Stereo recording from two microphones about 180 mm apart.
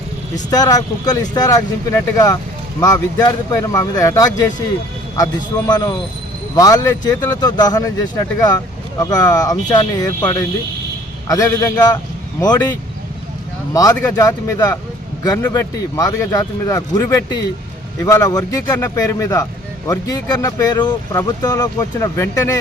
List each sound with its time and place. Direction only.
0.5 s speech: 20° left (ahead or behind)
13.7 s a man's voice: 20° left (ahead or behind)